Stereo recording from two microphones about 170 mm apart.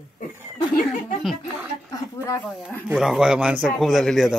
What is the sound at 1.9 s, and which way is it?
Speech, 20° left (ahead or behind).